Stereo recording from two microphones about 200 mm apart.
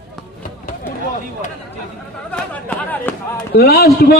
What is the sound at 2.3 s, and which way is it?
Chatter, 5° left (ahead or behind).